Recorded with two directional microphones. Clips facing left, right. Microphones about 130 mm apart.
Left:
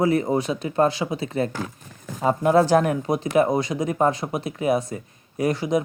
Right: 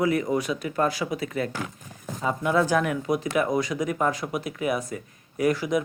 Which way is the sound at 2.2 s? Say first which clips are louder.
Left 5 dB; 40° left (ahead or behind).